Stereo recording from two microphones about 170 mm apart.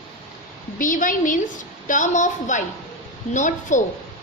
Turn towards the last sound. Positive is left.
turn(degrees=45)  # may be behind; listen again after turning